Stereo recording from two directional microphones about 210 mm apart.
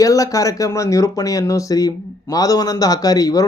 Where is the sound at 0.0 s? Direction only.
15° left (ahead or behind).